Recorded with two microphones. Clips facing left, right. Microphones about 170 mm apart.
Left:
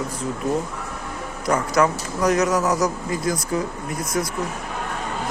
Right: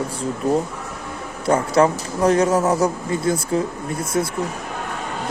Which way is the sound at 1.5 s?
30° right (ahead or behind).